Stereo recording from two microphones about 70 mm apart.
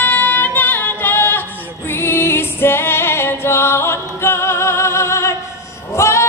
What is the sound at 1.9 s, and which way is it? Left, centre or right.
Music, left.